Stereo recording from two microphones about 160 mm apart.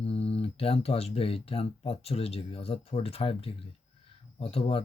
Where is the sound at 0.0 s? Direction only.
40° left (ahead or behind).